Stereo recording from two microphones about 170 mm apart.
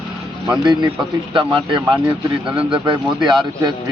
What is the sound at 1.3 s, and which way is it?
Speech, 30° right (ahead or behind).